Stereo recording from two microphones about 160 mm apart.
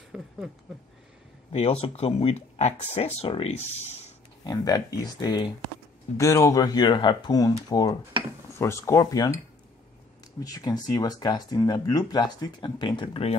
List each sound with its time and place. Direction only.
0.1 s a sound: 5° right (ahead or behind)
1.5 s speech: 40° left (ahead or behind)
4.5 s speech: 25° left (ahead or behind)
10.4 s speech: 25° left (ahead or behind)